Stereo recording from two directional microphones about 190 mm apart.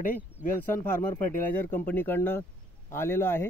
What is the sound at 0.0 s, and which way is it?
Speech, 45° left (ahead or behind).